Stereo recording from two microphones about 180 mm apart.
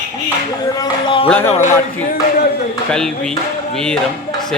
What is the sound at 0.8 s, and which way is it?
Chopping, 25° left (ahead or behind).